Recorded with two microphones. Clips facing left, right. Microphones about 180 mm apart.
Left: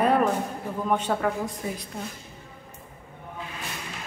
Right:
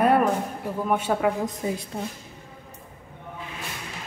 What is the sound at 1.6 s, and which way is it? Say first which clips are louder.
Speech: right 4 dB; 20° right (ahead or behind).